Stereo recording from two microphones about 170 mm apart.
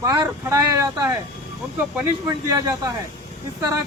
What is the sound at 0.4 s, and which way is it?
Speech, 15° right (ahead or behind).